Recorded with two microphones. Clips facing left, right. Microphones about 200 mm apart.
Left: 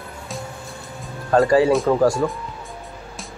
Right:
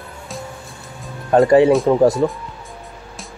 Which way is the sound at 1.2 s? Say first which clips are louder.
Right 4 dB; 20° right (ahead or behind).